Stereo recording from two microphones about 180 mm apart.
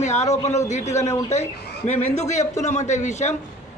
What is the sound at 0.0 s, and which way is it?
A man's voice, 40° left (ahead or behind).